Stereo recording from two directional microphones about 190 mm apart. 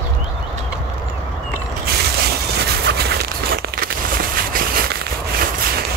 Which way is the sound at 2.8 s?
55° right (ahead or behind).